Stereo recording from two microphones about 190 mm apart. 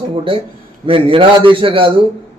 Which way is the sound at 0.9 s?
30° right (ahead or behind).